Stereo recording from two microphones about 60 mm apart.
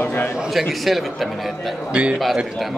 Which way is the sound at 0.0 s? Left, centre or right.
Left.